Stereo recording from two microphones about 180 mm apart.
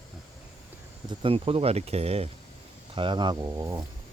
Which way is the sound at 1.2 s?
30° right (ahead or behind).